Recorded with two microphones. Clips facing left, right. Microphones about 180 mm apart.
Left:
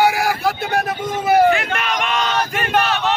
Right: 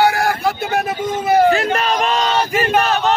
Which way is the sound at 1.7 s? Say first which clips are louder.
Right 4 dB; 35° right (ahead or behind).